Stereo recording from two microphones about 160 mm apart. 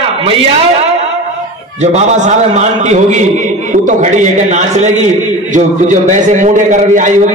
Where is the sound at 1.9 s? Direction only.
45° right (ahead or behind).